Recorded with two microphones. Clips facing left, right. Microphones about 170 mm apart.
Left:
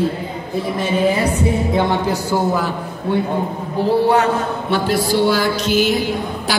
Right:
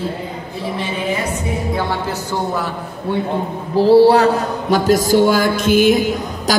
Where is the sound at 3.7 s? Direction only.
30° right (ahead or behind).